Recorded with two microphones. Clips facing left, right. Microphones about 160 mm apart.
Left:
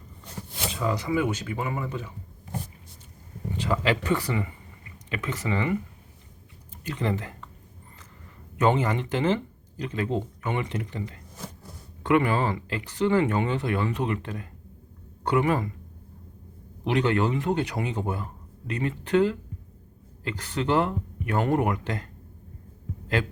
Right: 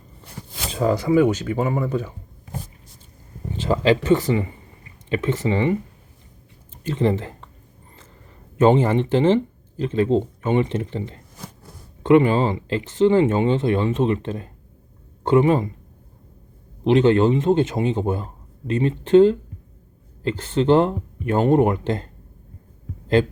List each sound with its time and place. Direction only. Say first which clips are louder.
0.7 s speech: right 9 dB; 40° right (ahead or behind)
3.5 s speech: right 7 dB; 25° right (ahead or behind)
6.8 s speech: right 8 dB; 30° right (ahead or behind)
8.5 s speech: right 7 dB; 30° right (ahead or behind)
16.8 s speech: right 8 dB; 25° right (ahead or behind)